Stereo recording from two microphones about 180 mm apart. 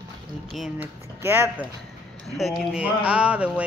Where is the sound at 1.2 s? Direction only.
10° right (ahead or behind).